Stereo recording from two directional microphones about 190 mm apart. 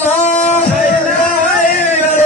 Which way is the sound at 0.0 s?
40° left (ahead or behind).